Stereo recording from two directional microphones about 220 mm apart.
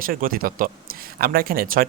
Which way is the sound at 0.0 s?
40° right (ahead or behind).